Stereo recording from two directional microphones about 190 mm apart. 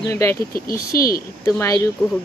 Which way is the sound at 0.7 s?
50° left (ahead or behind).